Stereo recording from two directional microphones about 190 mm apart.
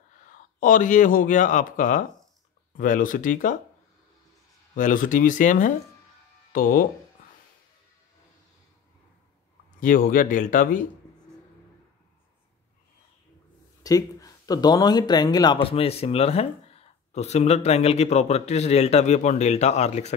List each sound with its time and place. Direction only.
0.2 s speech: 45° left (ahead or behind)
4.7 s speech: 45° left (ahead or behind)
9.8 s speech: 45° left (ahead or behind)
13.8 s speech: 20° left (ahead or behind); by 20.2 s 35° left (ahead or behind)